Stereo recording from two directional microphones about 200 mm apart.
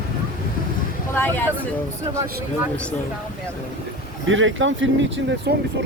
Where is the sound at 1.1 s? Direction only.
10° left (ahead or behind).